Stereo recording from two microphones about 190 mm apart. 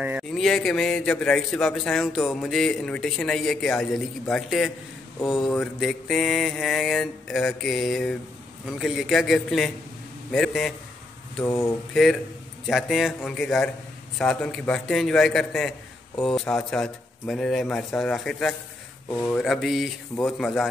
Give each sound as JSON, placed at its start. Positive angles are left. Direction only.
{"t": 0.0, "sound": "a sound", "side_deg": -10}
{"t": 0.3, "sound": "a man's voice", "side_deg": 0}
{"t": 11.4, "sound": "speech", "side_deg": 15}
{"t": 11.9, "sound": "a man's voice", "side_deg": 0}
{"t": 19.3, "sound": "a man's voice", "side_deg": 0}